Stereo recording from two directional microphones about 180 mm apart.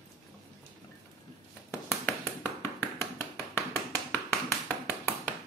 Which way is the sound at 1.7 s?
15° left (ahead or behind).